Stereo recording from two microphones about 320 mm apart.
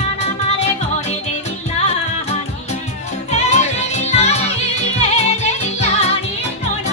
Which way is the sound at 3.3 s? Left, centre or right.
Left.